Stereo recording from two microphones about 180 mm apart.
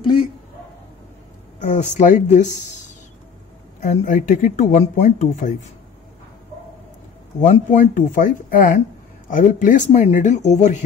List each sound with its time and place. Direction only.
0.0 s a sound: 30° left (ahead or behind)
1.6 s speech: 40° left (ahead or behind)
7.3 s speech: 45° left (ahead or behind)